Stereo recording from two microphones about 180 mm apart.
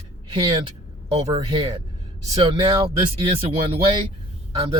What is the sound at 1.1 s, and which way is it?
Speech, 25° right (ahead or behind).